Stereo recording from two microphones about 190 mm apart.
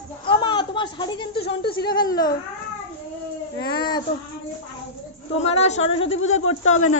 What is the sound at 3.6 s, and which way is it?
Speech, 60° left (ahead or behind).